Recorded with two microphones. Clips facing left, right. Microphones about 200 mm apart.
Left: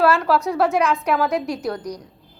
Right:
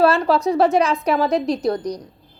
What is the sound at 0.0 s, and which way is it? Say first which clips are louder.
Speech: right 2 dB; 20° right (ahead or behind).